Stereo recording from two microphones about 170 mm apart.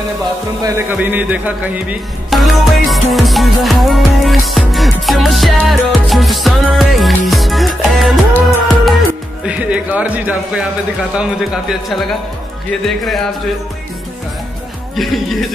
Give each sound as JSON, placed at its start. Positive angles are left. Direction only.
{"t": 0.7, "sound": "speech", "side_deg": -15}
{"t": 0.9, "sound": "music", "side_deg": -10}
{"t": 9.5, "sound": "speech", "side_deg": -5}
{"t": 11.1, "sound": "music", "side_deg": -5}